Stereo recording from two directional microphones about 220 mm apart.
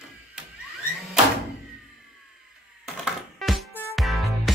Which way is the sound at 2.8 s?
Centre (ahead or behind).